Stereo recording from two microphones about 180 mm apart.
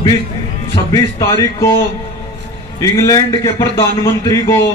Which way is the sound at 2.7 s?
20° left (ahead or behind).